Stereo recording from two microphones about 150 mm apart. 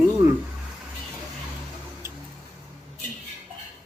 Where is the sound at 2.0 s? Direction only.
20° right (ahead or behind).